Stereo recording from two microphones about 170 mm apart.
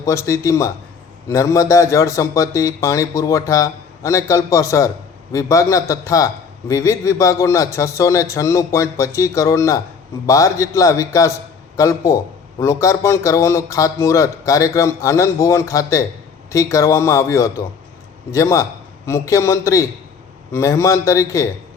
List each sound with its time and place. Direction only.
0.0 s a man's voice: 15° left (ahead or behind)